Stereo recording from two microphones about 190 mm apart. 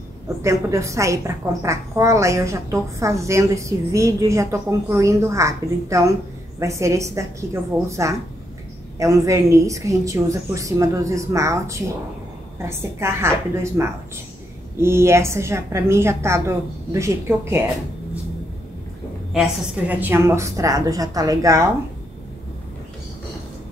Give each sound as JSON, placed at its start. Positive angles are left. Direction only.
{"t": 0.4, "sound": "a woman's voice", "side_deg": -15}
{"t": 19.9, "sound": "a woman's voice", "side_deg": -10}